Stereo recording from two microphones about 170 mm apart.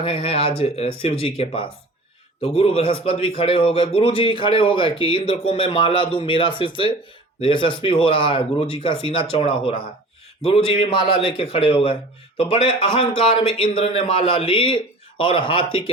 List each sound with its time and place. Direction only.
0.0 s a man's voice: 35° left (ahead or behind)